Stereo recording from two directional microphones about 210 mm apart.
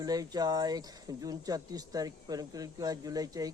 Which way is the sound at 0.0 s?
15° right (ahead or behind).